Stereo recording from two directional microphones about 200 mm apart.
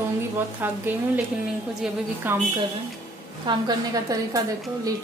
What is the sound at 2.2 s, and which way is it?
Speech, 10° right (ahead or behind).